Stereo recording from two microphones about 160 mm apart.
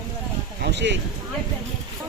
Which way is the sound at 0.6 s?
90° right.